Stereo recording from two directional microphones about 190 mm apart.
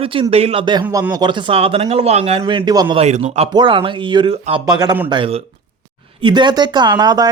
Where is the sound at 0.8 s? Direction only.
10° right (ahead or behind).